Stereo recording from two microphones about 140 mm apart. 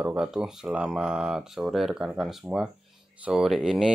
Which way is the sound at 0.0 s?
10° right (ahead or behind).